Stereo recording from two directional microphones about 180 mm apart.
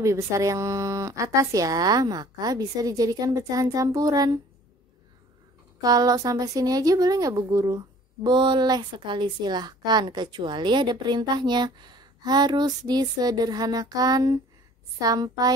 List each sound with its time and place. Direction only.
0.0 s a woman's voice: 15° right (ahead or behind)
5.8 s a woman's voice: 20° right (ahead or behind)